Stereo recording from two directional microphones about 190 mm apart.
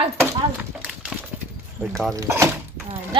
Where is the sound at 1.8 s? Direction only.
Centre (ahead or behind).